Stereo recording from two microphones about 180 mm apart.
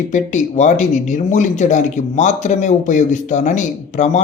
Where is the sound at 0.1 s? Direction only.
40° left (ahead or behind).